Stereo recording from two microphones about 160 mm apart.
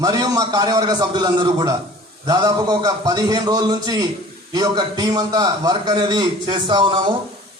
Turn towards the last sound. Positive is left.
turn(degrees=-30)  # may be behind; listen again after turning